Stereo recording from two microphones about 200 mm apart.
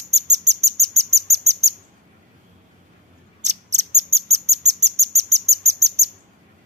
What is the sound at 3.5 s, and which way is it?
Bird, 35° right (ahead or behind).